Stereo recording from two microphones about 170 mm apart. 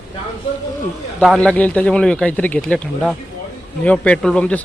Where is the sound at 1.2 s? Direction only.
5° left (ahead or behind).